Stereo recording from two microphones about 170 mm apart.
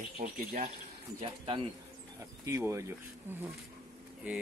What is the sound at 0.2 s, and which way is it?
Speech, 50° right (ahead or behind).